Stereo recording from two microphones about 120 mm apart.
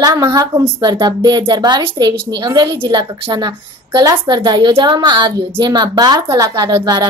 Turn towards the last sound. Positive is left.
turn(degrees=-35)  # may be behind; listen again after turning